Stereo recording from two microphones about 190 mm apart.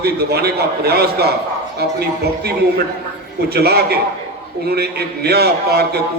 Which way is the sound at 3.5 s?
55° right (ahead or behind).